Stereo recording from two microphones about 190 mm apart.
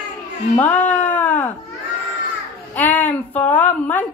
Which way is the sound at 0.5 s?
10° left (ahead or behind).